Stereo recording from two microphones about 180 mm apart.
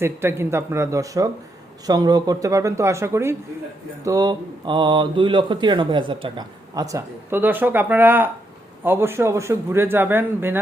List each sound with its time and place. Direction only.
0.0 s a man's voice: 15° right (ahead or behind)